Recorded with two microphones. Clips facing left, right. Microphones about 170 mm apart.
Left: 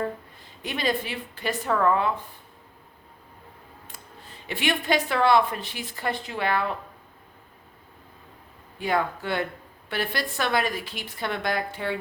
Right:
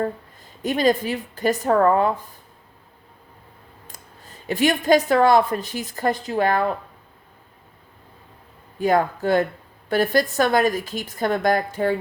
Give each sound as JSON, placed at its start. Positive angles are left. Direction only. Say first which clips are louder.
{"t": 0.6, "sound": "a woman's voice", "louder": "right 8 dB", "side_deg": -45}
{"t": 3.8, "sound": "speech", "louder": "right 1 dB", "side_deg": -40}
{"t": 8.8, "sound": "speech", "louder": "right 7 dB", "side_deg": -45}